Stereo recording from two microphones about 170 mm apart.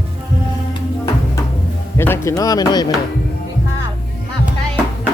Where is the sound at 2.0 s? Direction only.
15° left (ahead or behind).